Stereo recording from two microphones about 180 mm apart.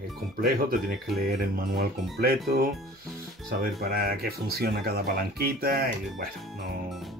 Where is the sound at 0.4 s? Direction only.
55° right (ahead or behind).